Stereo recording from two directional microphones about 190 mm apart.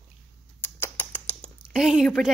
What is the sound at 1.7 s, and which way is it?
Speech, 5° right (ahead or behind).